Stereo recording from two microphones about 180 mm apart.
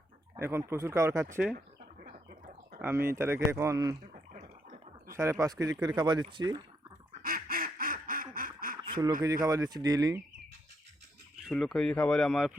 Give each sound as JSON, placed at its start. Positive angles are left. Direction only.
{"t": 0.3, "sound": "speech", "side_deg": -15}
{"t": 2.0, "sound": "a sound", "side_deg": -50}
{"t": 2.8, "sound": "speech", "side_deg": -15}
{"t": 5.0, "sound": "speech", "side_deg": -15}
{"t": 7.2, "sound": "quack", "side_deg": -55}
{"t": 8.8, "sound": "a sound", "side_deg": -25}
{"t": 9.2, "sound": "speech", "side_deg": -20}
{"t": 11.4, "sound": "speech", "side_deg": 0}